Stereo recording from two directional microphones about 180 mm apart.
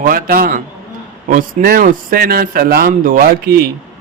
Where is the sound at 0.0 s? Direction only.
55° right (ahead or behind).